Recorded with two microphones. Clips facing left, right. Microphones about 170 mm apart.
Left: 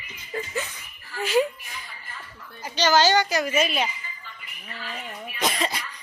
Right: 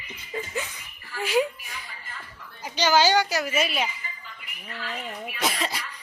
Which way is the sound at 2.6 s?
10° right (ahead or behind).